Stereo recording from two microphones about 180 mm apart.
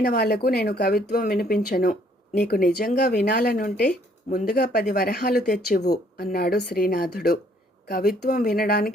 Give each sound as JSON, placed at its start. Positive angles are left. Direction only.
{"t": 0.0, "sound": "speech", "side_deg": 60}